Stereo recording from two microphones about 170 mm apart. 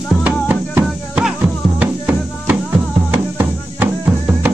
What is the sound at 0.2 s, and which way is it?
Music, 10° right (ahead or behind).